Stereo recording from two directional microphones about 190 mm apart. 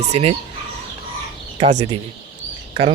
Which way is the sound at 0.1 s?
35° right (ahead or behind).